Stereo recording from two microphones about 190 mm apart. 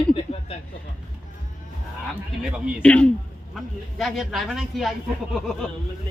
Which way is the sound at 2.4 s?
Centre (ahead or behind).